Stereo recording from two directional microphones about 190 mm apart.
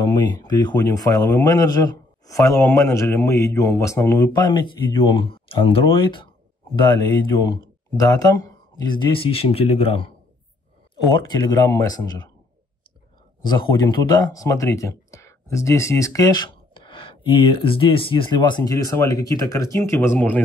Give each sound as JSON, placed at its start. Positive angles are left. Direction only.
{"t": 0.0, "sound": "a man's voice", "side_deg": 20}
{"t": 11.1, "sound": "a man's voice", "side_deg": 20}
{"t": 13.5, "sound": "speech", "side_deg": 20}